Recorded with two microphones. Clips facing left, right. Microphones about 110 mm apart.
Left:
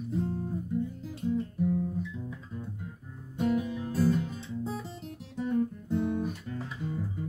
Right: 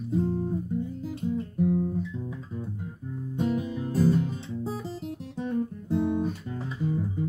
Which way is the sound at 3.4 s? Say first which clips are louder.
Even; 25° right (ahead or behind).